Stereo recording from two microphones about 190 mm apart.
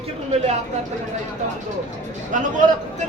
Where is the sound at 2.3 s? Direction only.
40° right (ahead or behind).